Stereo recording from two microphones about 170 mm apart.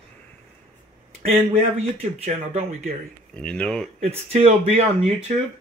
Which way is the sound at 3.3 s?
5° left (ahead or behind).